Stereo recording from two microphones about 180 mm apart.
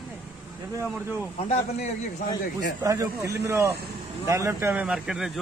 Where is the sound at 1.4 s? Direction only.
35° left (ahead or behind).